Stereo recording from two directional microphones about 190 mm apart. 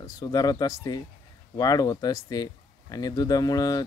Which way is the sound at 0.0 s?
20° left (ahead or behind).